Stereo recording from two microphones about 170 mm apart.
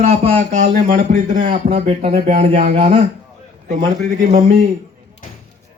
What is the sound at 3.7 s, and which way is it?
Speech, 55° right (ahead or behind).